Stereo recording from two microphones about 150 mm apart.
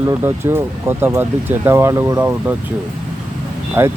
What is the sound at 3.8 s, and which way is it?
Speech, 15° right (ahead or behind).